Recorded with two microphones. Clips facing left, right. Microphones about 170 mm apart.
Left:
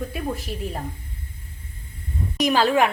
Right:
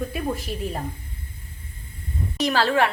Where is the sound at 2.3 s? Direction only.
15° left (ahead or behind).